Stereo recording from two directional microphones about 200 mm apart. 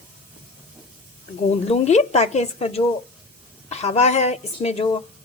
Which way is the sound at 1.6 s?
35° left (ahead or behind).